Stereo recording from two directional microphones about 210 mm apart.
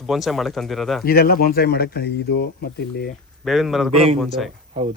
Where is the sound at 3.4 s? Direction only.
Centre (ahead or behind).